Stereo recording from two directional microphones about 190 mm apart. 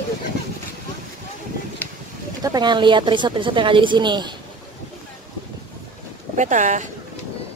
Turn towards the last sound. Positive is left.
turn(degrees=-40)  # may be behind; listen again after turning